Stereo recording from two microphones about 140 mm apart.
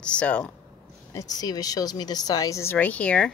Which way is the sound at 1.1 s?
25° left (ahead or behind).